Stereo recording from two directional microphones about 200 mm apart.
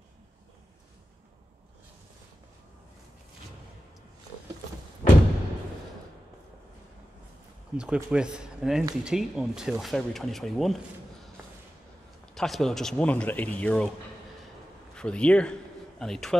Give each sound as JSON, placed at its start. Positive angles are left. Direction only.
{"t": 5.0, "sound": "music", "side_deg": 40}
{"t": 7.7, "sound": "speech", "side_deg": -5}
{"t": 12.4, "sound": "speech", "side_deg": 0}
{"t": 15.0, "sound": "speech", "side_deg": 5}